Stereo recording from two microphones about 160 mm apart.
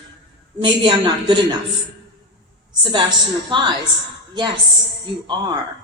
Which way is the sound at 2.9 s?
30° right (ahead or behind).